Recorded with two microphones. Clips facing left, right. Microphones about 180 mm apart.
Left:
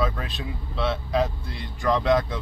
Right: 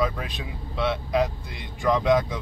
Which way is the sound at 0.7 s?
15° right (ahead or behind).